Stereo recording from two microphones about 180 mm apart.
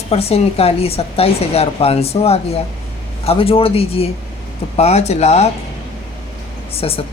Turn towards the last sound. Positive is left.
turn(degrees=30)  # may be behind; listen again after turning